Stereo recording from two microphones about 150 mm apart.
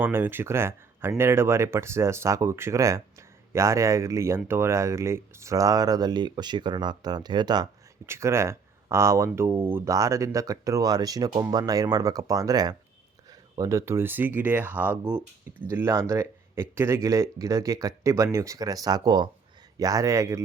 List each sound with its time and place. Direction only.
0.0 s speech: 15° right (ahead or behind)
8.0 s speech: 15° right (ahead or behind)